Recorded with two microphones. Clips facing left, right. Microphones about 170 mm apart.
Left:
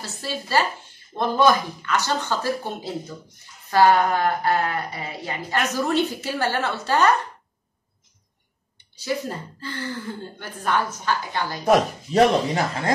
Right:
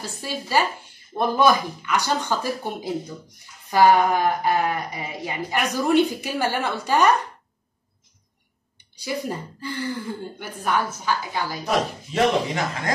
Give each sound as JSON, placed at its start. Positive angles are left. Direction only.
{"t": 0.0, "sound": "speech", "side_deg": -15}
{"t": 8.7, "sound": "speech", "side_deg": -15}
{"t": 11.6, "sound": "speech", "side_deg": 40}